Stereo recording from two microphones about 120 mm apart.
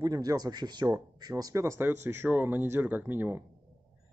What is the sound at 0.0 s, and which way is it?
Speech, 35° right (ahead or behind).